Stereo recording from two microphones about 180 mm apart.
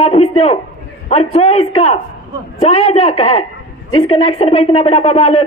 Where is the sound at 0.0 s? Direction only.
35° left (ahead or behind).